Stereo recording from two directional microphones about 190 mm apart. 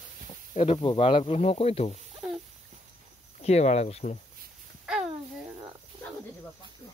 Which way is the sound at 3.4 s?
35° left (ahead or behind).